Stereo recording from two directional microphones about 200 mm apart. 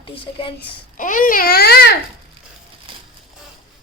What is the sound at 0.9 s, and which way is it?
Speech, 40° left (ahead or behind).